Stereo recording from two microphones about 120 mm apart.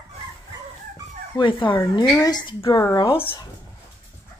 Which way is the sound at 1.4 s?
45° left (ahead or behind).